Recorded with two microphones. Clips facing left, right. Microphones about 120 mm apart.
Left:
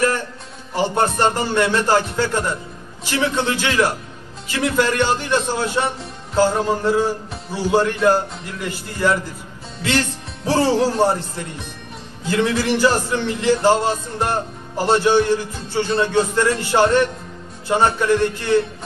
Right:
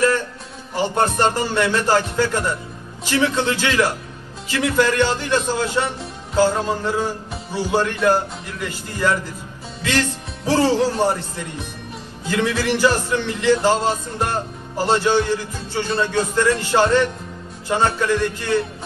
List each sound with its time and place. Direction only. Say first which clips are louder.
0.0 s music: right 1 dB; 15° left (ahead or behind)